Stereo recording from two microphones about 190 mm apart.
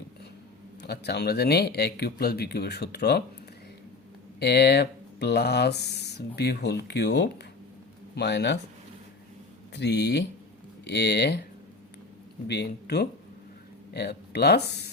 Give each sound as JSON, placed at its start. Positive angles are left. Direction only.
{"t": 0.8, "sound": "speech", "side_deg": 60}
{"t": 4.4, "sound": "speech", "side_deg": 60}
{"t": 9.7, "sound": "speech", "side_deg": 60}
{"t": 12.5, "sound": "speech", "side_deg": 60}